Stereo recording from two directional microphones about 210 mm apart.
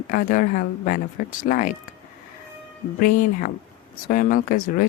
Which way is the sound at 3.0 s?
40° left (ahead or behind).